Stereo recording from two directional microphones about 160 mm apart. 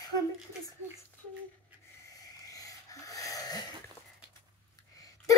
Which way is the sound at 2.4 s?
20° left (ahead or behind).